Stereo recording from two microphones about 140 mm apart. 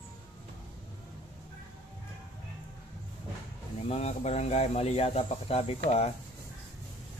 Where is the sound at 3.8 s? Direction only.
50° left (ahead or behind).